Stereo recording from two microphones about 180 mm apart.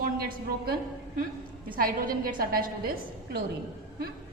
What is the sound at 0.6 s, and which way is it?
A woman's voice, 55° right (ahead or behind).